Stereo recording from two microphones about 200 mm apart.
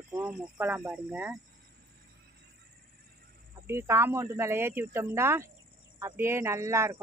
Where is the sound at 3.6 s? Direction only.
10° right (ahead or behind).